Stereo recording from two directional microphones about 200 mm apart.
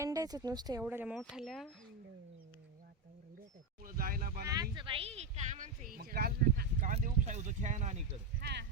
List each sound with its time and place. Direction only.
0.0 s speech: 15° right (ahead or behind); by 1.7 s centre (ahead or behind)
3.8 s speech: 45° right (ahead or behind)
4.4 s speech: 20° right (ahead or behind); by 6.9 s 50° right (ahead or behind)
6.9 s speech: 35° right (ahead or behind)
8.4 s speech: 55° right (ahead or behind)